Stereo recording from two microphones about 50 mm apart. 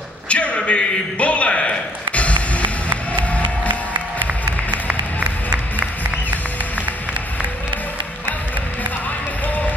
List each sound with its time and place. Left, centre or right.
0.3 s a sound: left
2.1 s music: left
3.9 s music: right